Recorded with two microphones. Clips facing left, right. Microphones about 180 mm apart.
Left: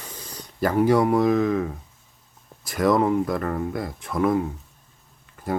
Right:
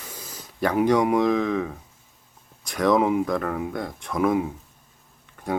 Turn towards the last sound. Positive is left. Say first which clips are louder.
# even
turn(degrees=0)  # may be behind; listen again after turning